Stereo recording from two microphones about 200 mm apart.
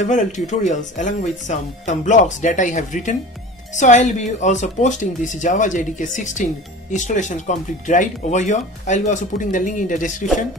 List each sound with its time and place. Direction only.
0.0 s speech: 35° left (ahead or behind)